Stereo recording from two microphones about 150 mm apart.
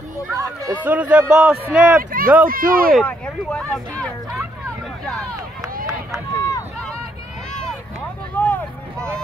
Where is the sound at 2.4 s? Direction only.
70° right (ahead or behind).